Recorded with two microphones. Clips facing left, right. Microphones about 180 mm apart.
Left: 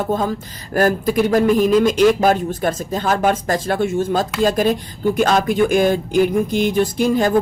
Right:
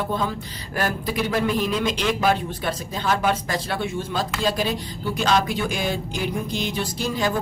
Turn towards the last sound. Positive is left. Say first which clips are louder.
# left 8 dB
turn(degrees=50)  # may be behind; listen again after turning